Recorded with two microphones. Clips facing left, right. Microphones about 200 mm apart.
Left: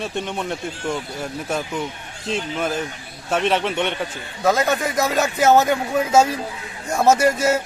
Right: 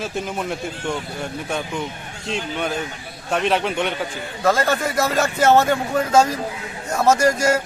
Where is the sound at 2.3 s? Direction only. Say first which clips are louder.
Left 1 dB; centre (ahead or behind).